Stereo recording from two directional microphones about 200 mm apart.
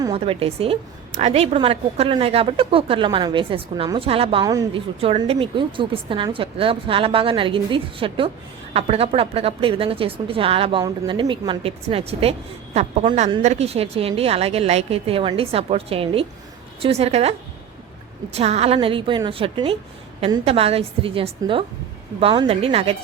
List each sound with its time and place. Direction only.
0.0 s a woman's voice: 25° right (ahead or behind)
18.3 s a woman's voice: 30° right (ahead or behind)